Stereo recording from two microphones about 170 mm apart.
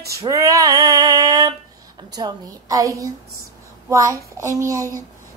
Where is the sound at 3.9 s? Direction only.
20° right (ahead or behind).